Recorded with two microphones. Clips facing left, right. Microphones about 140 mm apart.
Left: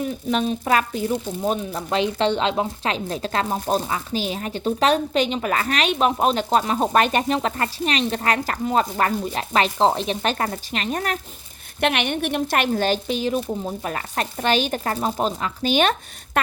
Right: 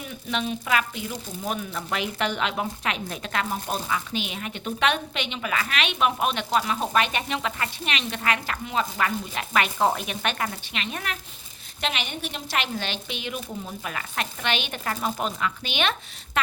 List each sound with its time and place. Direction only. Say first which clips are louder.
0.3 s speech: left 5 dB; 40° left (ahead or behind)
11.8 s speech: left 9 dB; 60° left (ahead or behind); by 16.4 s 45° left (ahead or behind)